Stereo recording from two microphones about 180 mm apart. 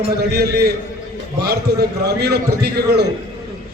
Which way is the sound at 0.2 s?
65° right (ahead or behind).